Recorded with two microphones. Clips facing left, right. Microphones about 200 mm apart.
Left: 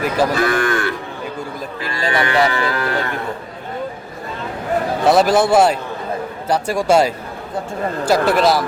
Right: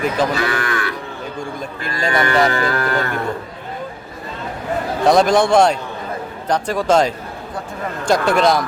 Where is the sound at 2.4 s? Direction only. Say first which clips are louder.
Right 1 dB; 45° right (ahead or behind).